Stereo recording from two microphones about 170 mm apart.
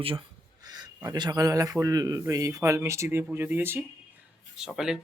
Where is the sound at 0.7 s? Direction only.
25° right (ahead or behind).